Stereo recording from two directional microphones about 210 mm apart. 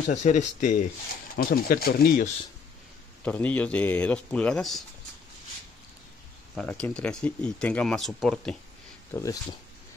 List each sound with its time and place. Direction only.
0.1 s speech: 35° left (ahead or behind)
3.3 s speech: 5° left (ahead or behind)
6.5 s speech: 5° left (ahead or behind)
9.1 s speech: 15° left (ahead or behind)